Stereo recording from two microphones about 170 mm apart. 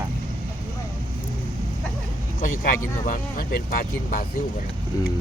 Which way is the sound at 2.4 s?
55° left (ahead or behind).